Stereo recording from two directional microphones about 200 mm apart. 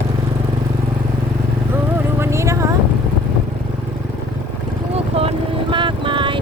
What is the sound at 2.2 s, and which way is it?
Vehicle, 15° right (ahead or behind).